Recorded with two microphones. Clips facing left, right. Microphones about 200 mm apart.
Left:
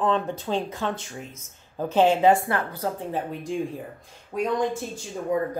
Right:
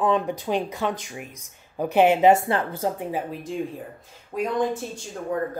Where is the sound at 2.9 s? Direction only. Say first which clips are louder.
Right 1 dB; 5° right (ahead or behind).